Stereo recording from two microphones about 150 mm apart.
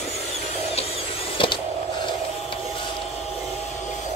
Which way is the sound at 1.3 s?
35° left (ahead or behind).